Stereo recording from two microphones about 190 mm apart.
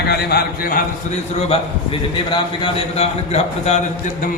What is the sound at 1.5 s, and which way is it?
A man's voice, 25° left (ahead or behind).